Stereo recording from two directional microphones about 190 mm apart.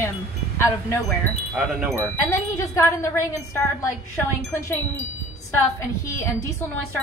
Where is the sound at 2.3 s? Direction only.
15° left (ahead or behind).